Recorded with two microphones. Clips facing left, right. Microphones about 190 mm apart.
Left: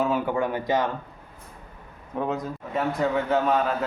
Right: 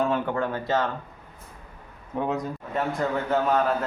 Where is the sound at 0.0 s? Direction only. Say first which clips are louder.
Left 1 dB; 10° left (ahead or behind).